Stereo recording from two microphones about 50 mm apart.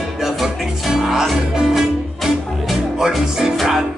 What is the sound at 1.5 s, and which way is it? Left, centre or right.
Music, centre.